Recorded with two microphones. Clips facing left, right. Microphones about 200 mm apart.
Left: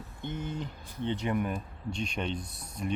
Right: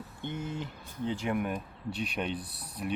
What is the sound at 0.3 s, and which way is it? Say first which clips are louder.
Speech: left 1 dB; 5° right (ahead or behind).